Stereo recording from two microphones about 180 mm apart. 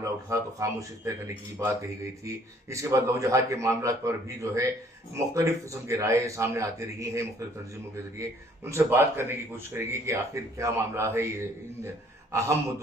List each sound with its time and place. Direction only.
0.0 s a man's voice: 15° right (ahead or behind)